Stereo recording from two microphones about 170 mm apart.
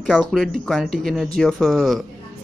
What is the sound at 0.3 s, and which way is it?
Speech, centre (ahead or behind).